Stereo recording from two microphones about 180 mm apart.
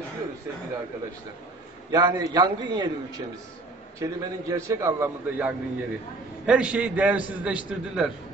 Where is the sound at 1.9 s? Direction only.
20° right (ahead or behind).